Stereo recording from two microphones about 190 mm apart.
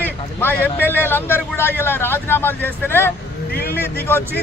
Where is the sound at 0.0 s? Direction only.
10° left (ahead or behind).